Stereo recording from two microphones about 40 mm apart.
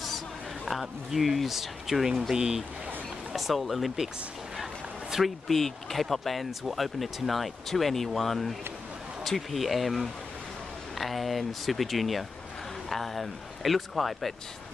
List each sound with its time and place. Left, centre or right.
0.7 s speech: centre
3.3 s speech: centre
5.1 s speech: centre
5.5 s speech: centre